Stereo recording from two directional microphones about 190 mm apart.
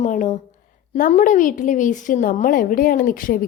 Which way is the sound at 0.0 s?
40° left (ahead or behind).